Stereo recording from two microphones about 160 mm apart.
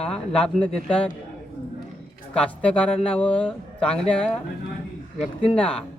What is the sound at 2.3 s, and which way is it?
A man's voice, 5° left (ahead or behind).